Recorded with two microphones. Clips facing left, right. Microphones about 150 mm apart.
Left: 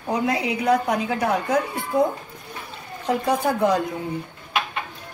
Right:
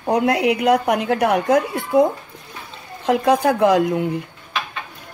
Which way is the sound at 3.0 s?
90° right.